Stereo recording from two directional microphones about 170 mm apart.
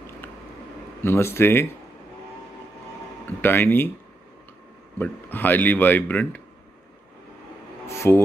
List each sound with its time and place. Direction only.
1.0 s speech: 15° left (ahead or behind)
3.3 s speech: 10° left (ahead or behind)
4.9 s speech: 10° left (ahead or behind)
7.9 s a sound: 15° left (ahead or behind)